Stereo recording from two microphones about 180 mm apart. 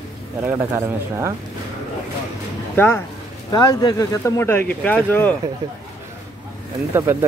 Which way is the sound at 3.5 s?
20° left (ahead or behind).